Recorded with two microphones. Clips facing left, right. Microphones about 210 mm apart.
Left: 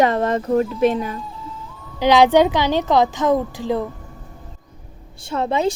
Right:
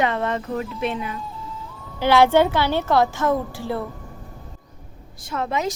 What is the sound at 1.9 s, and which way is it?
A woman's voice, 15° left (ahead or behind).